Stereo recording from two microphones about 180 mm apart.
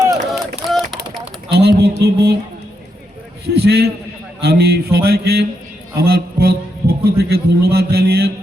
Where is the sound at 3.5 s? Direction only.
60° right (ahead or behind).